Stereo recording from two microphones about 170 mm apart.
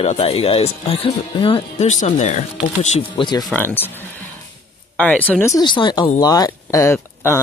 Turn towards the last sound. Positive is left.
turn(degrees=15)  # may be behind; listen again after turning